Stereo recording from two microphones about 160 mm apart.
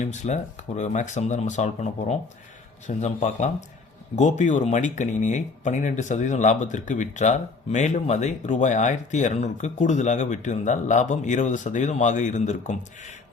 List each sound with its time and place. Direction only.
0.0 s speech: 45° left (ahead or behind)